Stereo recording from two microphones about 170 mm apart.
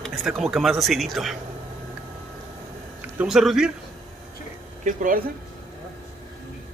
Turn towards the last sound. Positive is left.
turn(degrees=-50)  # may be behind; listen again after turning